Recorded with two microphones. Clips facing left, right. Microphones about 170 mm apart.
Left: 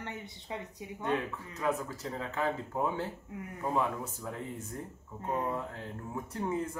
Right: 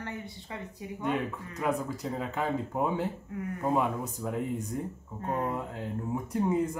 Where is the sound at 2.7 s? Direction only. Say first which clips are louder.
Right 3 dB; 15° right (ahead or behind).